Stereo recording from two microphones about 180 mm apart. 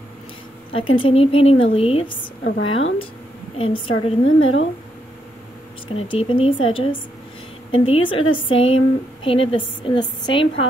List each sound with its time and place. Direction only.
0.7 s speech: 30° left (ahead or behind)
2.4 s a woman's voice: 80° left
3.5 s a woman's voice: 30° left (ahead or behind)
4.4 s speech: 90° left
5.9 s a woman's voice: 30° left (ahead or behind)